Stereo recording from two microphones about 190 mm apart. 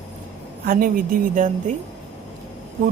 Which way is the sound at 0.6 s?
50° right (ahead or behind).